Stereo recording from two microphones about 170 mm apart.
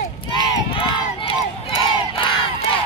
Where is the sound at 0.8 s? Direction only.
30° left (ahead or behind).